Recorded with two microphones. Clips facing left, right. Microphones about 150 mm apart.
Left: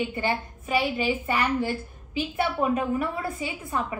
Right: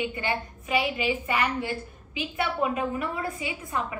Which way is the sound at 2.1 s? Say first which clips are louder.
Left 3 dB; 40° left (ahead or behind).